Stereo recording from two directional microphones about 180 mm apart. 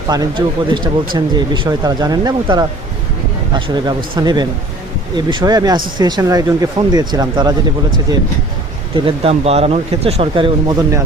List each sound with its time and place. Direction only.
0.1 s speech: 25° right (ahead or behind)
9.0 s speech: 35° right (ahead or behind)